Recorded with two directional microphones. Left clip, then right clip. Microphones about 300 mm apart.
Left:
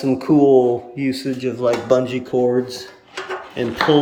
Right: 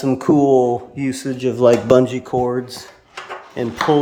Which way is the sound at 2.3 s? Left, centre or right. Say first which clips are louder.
Left 1 dB; right.